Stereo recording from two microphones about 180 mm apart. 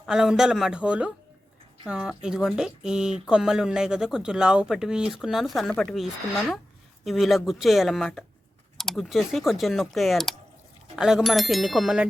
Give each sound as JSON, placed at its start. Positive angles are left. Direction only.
{"t": 0.0, "sound": "speech", "side_deg": -5}